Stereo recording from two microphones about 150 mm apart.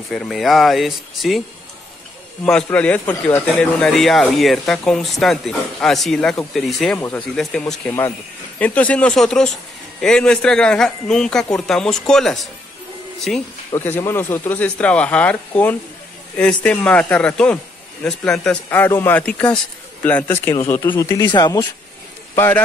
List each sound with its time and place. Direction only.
0.1 s speech: centre (ahead or behind)
2.4 s speech: 10° left (ahead or behind)
13.7 s speech: 15° left (ahead or behind)
22.3 s a man's voice: 15° left (ahead or behind)